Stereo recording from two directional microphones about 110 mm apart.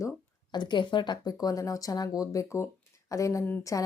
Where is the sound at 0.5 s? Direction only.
45° left (ahead or behind).